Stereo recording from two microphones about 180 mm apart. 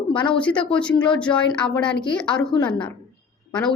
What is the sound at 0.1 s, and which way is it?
Speech, 30° left (ahead or behind).